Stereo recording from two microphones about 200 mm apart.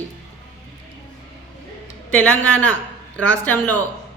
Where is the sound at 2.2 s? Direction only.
5° left (ahead or behind).